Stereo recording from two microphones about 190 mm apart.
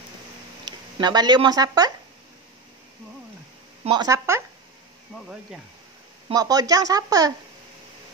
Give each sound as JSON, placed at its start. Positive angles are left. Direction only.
{"t": 0.7, "sound": "speech", "side_deg": -20}
{"t": 3.8, "sound": "speech", "side_deg": -20}
{"t": 5.1, "sound": "speech", "side_deg": -5}
{"t": 6.2, "sound": "speech", "side_deg": -20}